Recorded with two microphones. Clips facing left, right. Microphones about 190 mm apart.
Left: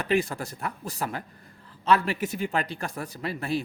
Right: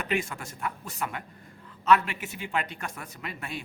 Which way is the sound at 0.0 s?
35° left (ahead or behind).